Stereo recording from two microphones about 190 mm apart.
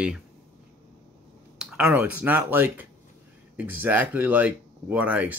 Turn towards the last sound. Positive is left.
turn(degrees=-10)  # may be behind; listen again after turning